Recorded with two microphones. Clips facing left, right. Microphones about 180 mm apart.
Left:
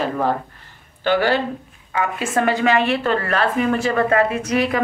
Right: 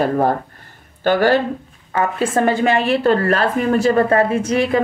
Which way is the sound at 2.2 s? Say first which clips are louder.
Right 2 dB; 30° right (ahead or behind).